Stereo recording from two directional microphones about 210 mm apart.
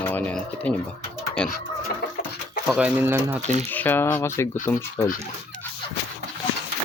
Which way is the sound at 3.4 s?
30° right (ahead or behind).